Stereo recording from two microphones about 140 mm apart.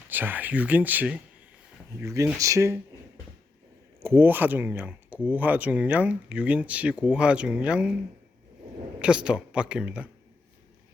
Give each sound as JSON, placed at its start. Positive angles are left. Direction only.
{"t": 0.1, "sound": "speech", "side_deg": -15}
{"t": 4.0, "sound": "speech", "side_deg": -15}
{"t": 9.0, "sound": "speech", "side_deg": -5}